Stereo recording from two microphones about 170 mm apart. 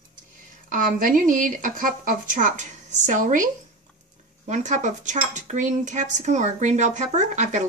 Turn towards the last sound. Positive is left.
turn(degrees=-45)  # may be behind; listen again after turning